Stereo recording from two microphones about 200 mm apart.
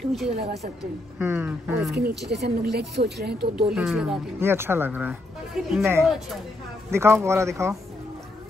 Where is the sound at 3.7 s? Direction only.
Centre (ahead or behind).